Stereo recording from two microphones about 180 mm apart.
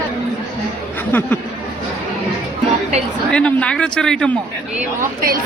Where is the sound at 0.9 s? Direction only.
10° left (ahead or behind).